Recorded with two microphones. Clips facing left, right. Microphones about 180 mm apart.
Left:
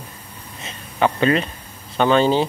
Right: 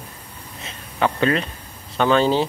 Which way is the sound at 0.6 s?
Centre (ahead or behind).